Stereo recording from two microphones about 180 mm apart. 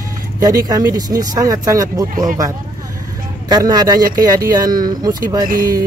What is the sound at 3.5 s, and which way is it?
Speech, 20° right (ahead or behind).